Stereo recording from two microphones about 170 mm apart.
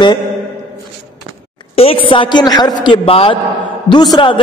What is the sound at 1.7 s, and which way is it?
A woman's voice, 35° left (ahead or behind).